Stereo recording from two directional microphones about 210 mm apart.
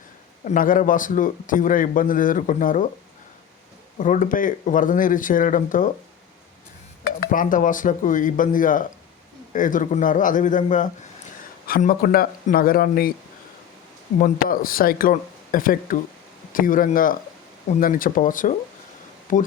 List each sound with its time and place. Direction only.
0.4 s a man's voice: 40° left (ahead or behind)
3.9 s a man's voice: 40° left (ahead or behind)
7.0 s a man's voice: 45° left (ahead or behind)
14.2 s a man's voice: 40° left (ahead or behind)